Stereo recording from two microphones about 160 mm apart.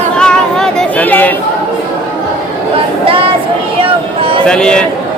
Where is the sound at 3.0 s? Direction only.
35° right (ahead or behind).